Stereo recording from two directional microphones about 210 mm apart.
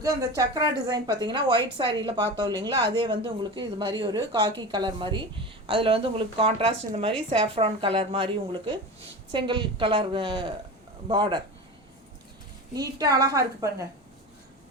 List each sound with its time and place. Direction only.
0.0 s speech: 15° right (ahead or behind)
12.7 s a woman's voice: 20° right (ahead or behind)